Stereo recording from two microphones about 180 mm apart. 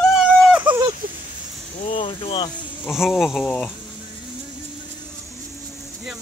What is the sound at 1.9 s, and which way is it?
Speech, 30° left (ahead or behind).